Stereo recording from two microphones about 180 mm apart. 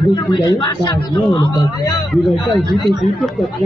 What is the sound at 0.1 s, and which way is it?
A man's voice, 25° left (ahead or behind).